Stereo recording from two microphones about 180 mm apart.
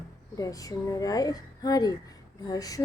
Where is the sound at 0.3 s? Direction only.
20° left (ahead or behind).